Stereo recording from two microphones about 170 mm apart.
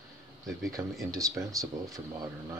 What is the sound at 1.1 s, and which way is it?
Speech, 20° right (ahead or behind).